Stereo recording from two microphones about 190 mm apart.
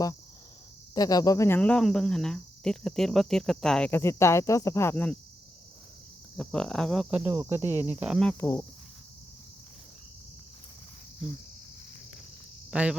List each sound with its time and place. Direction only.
0.9 s speech: 20° left (ahead or behind)
6.3 s speech: centre (ahead or behind)
7.6 s speech: 15° left (ahead or behind)
7.9 s speech: 10° right (ahead or behind); by 8.6 s 15° left (ahead or behind)
12.7 s speech: 5° right (ahead or behind)